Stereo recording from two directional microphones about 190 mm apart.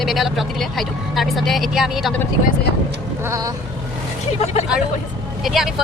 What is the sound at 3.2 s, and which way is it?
Speech, 15° right (ahead or behind).